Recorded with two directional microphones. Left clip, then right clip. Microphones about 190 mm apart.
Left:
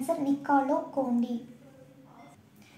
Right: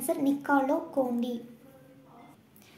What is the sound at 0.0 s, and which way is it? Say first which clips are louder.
Speech: even; 20° right (ahead or behind).